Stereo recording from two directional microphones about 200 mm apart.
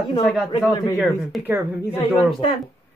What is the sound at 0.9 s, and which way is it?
Speech, centre (ahead or behind).